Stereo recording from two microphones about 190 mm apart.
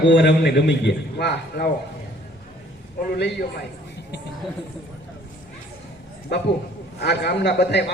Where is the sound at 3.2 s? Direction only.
65° left (ahead or behind).